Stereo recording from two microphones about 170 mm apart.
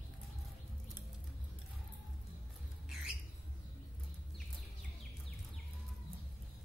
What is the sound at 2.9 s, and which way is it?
Squawk, centre (ahead or behind).